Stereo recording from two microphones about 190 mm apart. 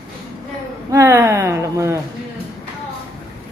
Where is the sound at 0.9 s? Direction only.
15° right (ahead or behind).